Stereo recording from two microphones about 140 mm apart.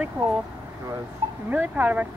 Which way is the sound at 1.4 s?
10° right (ahead or behind).